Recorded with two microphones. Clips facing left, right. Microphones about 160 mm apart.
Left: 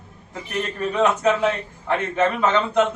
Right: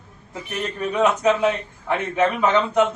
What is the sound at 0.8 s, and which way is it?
A man's voice, 10° right (ahead or behind).